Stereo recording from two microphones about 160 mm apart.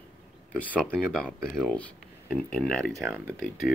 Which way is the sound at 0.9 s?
5° left (ahead or behind).